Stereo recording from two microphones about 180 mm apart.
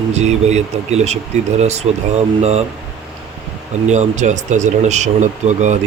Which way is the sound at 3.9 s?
40° right (ahead or behind).